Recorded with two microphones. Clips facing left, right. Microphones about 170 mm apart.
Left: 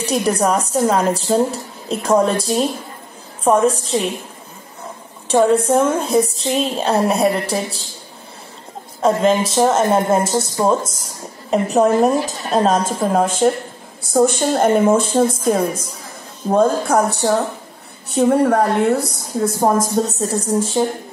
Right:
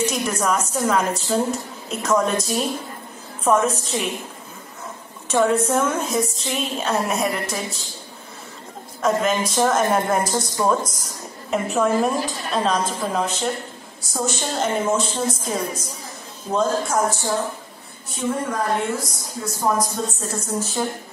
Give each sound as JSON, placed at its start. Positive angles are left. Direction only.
{"t": 0.0, "sound": "a woman's voice", "side_deg": 35}
{"t": 5.3, "sound": "a woman's voice", "side_deg": 35}
{"t": 9.0, "sound": "speech", "side_deg": 30}
{"t": 11.5, "sound": "a woman's voice", "side_deg": 40}
{"t": 20.1, "sound": "a woman's voice", "side_deg": 35}